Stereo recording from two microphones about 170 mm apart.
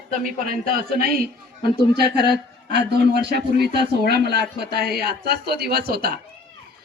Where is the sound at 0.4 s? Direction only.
60° right (ahead or behind).